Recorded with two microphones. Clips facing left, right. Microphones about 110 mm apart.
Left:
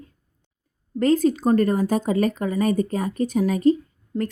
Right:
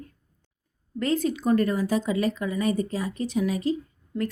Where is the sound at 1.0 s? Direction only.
40° left (ahead or behind).